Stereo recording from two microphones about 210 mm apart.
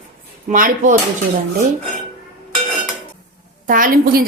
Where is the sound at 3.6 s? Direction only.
40° right (ahead or behind).